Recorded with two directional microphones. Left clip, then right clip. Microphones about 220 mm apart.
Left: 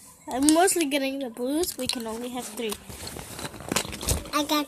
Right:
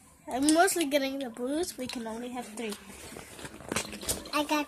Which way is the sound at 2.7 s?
45° left (ahead or behind).